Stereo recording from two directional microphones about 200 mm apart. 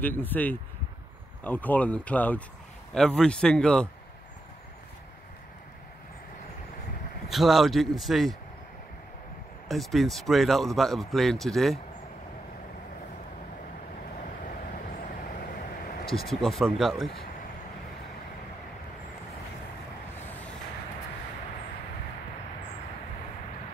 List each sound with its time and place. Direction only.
0.0 s speech: 10° left (ahead or behind)
7.2 s speech: centre (ahead or behind)
9.7 s speech: centre (ahead or behind)
15.2 s vehicle: 45° left (ahead or behind)
16.3 s speech: centre (ahead or behind)
20.2 s vehicle: 10° left (ahead or behind)